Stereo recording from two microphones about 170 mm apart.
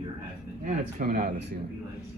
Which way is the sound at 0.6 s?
45° right (ahead or behind).